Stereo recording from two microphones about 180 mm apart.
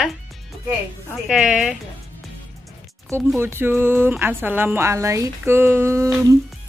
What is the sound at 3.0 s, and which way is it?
Speech, 15° right (ahead or behind).